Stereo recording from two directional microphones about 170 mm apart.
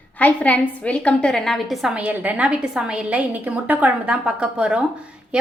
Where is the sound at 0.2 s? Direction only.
10° left (ahead or behind).